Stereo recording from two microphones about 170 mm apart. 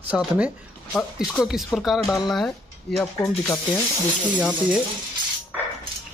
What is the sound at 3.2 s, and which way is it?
Speech, 20° left (ahead or behind).